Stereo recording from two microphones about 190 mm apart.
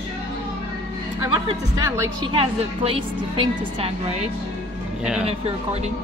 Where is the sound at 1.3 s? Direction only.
15° right (ahead or behind).